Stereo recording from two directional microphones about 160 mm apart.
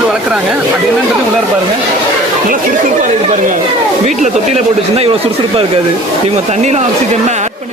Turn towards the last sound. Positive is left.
turn(degrees=-45)  # may be behind; listen again after turning